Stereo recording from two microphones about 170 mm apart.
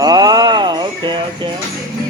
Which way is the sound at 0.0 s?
25° right (ahead or behind).